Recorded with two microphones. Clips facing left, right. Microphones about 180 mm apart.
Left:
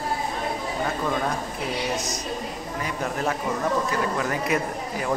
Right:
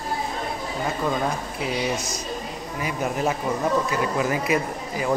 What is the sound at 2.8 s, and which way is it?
A man's voice, 10° right (ahead or behind).